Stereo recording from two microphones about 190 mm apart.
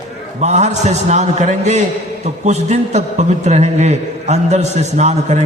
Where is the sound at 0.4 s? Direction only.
35° right (ahead or behind).